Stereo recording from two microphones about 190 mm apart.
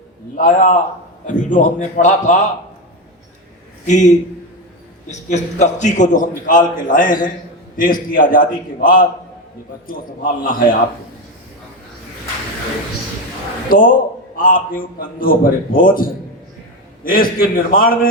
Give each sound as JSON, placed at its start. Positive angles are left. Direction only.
{"t": 0.3, "sound": "a man's voice", "side_deg": 45}
{"t": 3.8, "sound": "a man's voice", "side_deg": 40}
{"t": 5.3, "sound": "a man's voice", "side_deg": 40}
{"t": 13.7, "sound": "a man's voice", "side_deg": 45}